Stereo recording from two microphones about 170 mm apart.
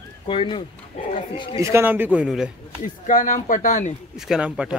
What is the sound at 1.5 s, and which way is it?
Speech, 15° right (ahead or behind).